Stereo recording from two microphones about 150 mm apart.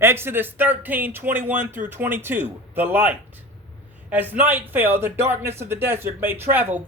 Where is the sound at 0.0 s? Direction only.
15° right (ahead or behind).